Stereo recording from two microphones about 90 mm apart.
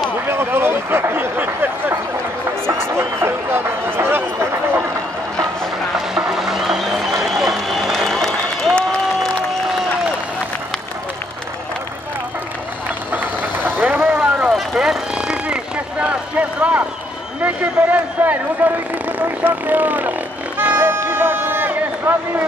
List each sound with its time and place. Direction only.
0.3 s speech: 25° right (ahead or behind)
5.9 s music: 5° right (ahead or behind)
13.1 s vehicle: 20° right (ahead or behind)
14.5 s vehicle: 5° right (ahead or behind)
17.4 s a man's voice: 20° right (ahead or behind)
19.1 s harmonica: 20° right (ahead or behind)